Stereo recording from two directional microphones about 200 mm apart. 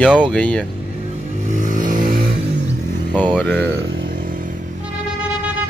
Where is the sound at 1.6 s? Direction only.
40° right (ahead or behind).